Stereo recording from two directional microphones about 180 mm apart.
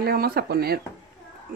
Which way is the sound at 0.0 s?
60° right (ahead or behind).